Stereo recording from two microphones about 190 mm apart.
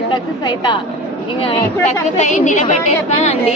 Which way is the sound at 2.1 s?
40° left (ahead or behind).